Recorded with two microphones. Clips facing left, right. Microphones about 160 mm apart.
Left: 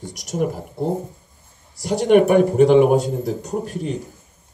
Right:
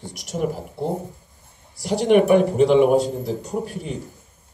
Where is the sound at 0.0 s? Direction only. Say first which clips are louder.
Left 2 dB; 45° left (ahead or behind).